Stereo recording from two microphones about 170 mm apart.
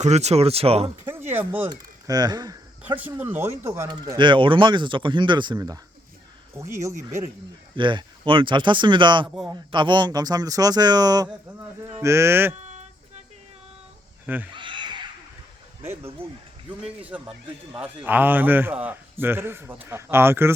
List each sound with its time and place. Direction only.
0.0 s speech: 40° right (ahead or behind)
1.0 s a sound: 15° right (ahead or behind)
2.0 s speech: 25° right (ahead or behind)
2.8 s a man's voice: 10° right (ahead or behind)
3.8 s speech: 25° right (ahead or behind)
6.5 s speech: 15° right (ahead or behind)
7.8 s speech: 30° right (ahead or behind)
9.2 s a man's voice: 5° right (ahead or behind)
9.7 s a man's voice: 25° right (ahead or behind)
14.5 s a sound: 30° right (ahead or behind)
15.8 s a man's voice: 15° right (ahead or behind)
17.7 s a man's voice: 10° right (ahead or behind)